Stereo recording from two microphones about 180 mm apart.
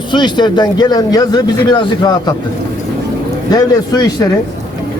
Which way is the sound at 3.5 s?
20° left (ahead or behind).